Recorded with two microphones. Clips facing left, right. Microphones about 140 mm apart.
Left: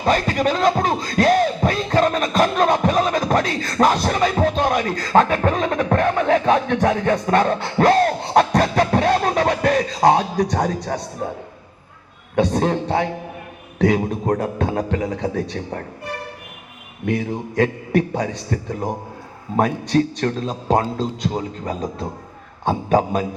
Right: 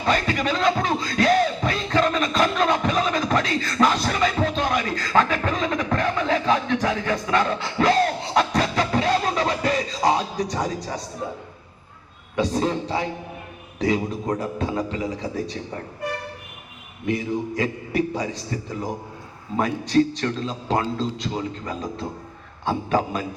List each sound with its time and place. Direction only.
0.0 s music: 45° left (ahead or behind)
11.2 s a man's voice: 55° left (ahead or behind)
12.4 s a man's voice: 60° left (ahead or behind)
17.1 s a man's voice: 60° left (ahead or behind)